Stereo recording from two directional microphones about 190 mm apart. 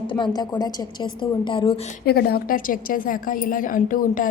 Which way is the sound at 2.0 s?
55° left (ahead or behind).